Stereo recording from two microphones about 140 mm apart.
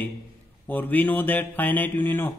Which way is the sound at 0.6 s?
10° left (ahead or behind).